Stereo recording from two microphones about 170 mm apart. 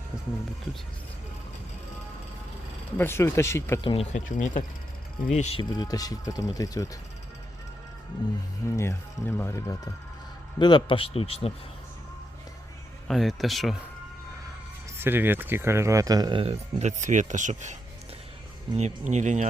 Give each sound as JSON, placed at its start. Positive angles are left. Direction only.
{"t": 3.0, "sound": "speech", "side_deg": 15}
{"t": 3.8, "sound": "speech", "side_deg": 30}
{"t": 4.1, "sound": "speech", "side_deg": 50}
{"t": 5.3, "sound": "speech", "side_deg": 40}
{"t": 5.8, "sound": "speech", "side_deg": 20}
{"t": 8.6, "sound": "speech", "side_deg": 15}
{"t": 13.1, "sound": "speech", "side_deg": 0}
{"t": 14.9, "sound": "speech", "side_deg": -10}
{"t": 18.8, "sound": "speech", "side_deg": -45}